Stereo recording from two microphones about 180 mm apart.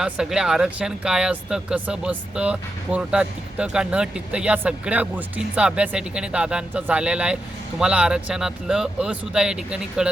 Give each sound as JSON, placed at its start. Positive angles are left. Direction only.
{"t": 0.0, "sound": "speech", "side_deg": -5}